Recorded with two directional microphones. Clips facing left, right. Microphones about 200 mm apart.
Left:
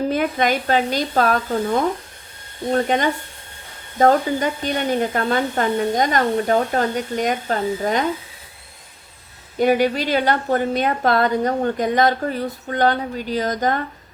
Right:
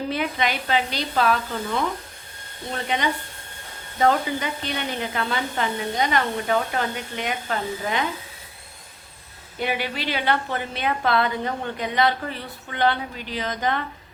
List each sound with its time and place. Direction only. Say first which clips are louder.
0.1 s a woman's voice: left 6 dB; 45° left (ahead or behind)
9.6 s a woman's voice: left 10 dB; 45° left (ahead or behind)